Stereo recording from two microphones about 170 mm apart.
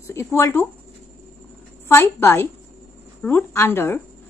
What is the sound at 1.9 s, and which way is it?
A woman's voice, 15° left (ahead or behind).